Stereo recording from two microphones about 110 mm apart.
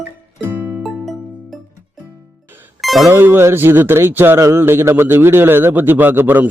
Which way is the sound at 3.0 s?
20° right (ahead or behind).